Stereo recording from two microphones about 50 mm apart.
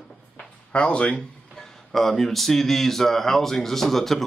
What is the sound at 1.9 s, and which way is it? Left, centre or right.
Speech, centre.